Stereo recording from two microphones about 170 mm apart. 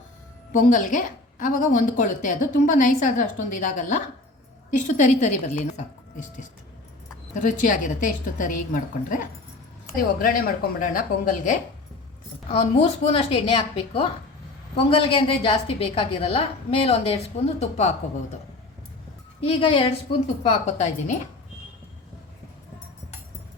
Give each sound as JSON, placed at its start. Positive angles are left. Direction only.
{"t": 0.5, "sound": "a woman's voice", "side_deg": 50}
{"t": 7.4, "sound": "a woman's voice", "side_deg": 50}
{"t": 10.2, "sound": "speech", "side_deg": 55}
{"t": 13.1, "sound": "a woman's voice", "side_deg": 35}
{"t": 19.4, "sound": "a woman's voice", "side_deg": 30}